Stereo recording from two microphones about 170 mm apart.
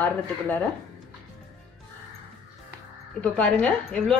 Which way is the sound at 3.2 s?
5° left (ahead or behind).